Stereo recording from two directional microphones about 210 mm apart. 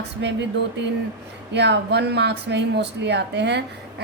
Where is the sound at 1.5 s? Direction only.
55° right (ahead or behind).